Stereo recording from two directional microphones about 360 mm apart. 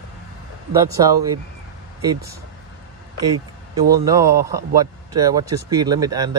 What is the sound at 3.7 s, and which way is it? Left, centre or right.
Speech, centre.